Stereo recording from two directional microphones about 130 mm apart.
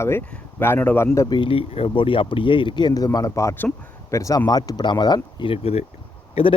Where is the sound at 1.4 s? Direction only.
45° left (ahead or behind).